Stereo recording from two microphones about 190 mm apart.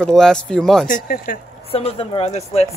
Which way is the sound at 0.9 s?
45° left (ahead or behind).